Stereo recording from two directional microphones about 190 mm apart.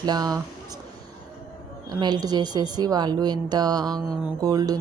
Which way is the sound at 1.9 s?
20° right (ahead or behind).